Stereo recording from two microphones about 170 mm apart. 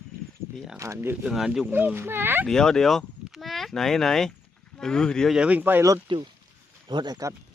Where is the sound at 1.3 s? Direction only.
Centre (ahead or behind).